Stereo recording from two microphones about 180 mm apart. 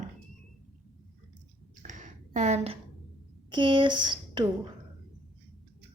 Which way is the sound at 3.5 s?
25° right (ahead or behind).